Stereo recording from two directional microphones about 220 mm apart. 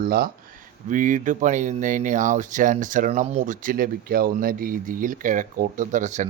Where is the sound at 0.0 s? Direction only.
40° right (ahead or behind).